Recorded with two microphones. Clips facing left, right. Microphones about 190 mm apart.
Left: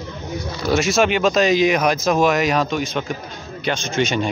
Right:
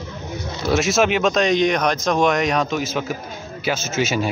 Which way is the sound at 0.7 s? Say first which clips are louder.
Even; centre (ahead or behind).